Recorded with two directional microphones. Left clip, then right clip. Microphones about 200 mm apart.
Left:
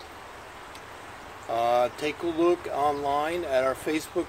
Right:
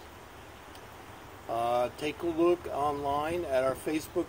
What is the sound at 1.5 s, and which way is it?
Speech, centre (ahead or behind).